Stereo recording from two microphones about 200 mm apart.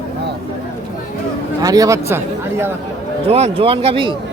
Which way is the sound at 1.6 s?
15° right (ahead or behind).